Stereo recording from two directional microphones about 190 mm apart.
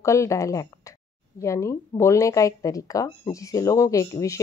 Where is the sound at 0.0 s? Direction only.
15° left (ahead or behind).